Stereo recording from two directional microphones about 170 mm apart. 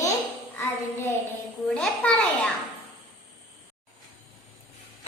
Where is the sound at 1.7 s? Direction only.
5° left (ahead or behind).